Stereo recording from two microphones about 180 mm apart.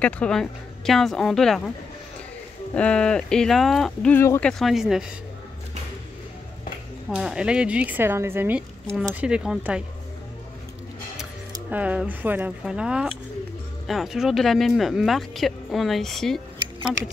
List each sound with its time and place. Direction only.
0.0 s speech: 5° left (ahead or behind)
2.7 s speech: 5° left (ahead or behind)
7.1 s speech: 5° right (ahead or behind)
11.7 s speech: 10° right (ahead or behind)